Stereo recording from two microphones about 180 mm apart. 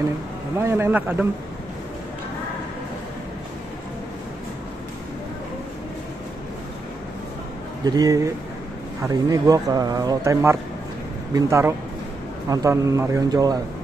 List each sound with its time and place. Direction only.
0.6 s speech: 15° right (ahead or behind)
7.8 s a man's voice: 20° right (ahead or behind)